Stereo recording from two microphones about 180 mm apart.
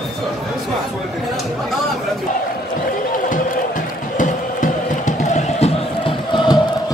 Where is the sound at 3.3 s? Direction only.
45° left (ahead or behind).